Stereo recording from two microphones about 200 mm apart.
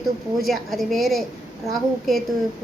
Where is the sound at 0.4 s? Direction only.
Centre (ahead or behind).